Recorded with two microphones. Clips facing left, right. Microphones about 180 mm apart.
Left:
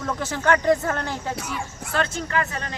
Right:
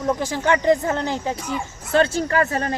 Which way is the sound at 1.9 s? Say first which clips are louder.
Right 7 dB; 30° right (ahead or behind).